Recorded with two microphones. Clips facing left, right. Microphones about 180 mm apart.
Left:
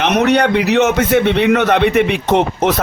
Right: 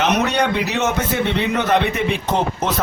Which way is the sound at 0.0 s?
70° left (ahead or behind).